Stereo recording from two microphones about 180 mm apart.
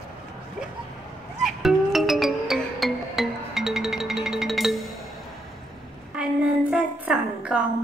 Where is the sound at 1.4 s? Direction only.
Centre (ahead or behind).